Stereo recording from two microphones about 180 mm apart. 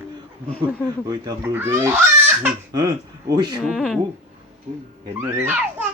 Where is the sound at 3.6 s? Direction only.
5° left (ahead or behind).